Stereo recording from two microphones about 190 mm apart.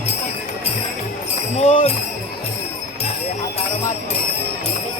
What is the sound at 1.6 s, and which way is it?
Speech, 30° left (ahead or behind).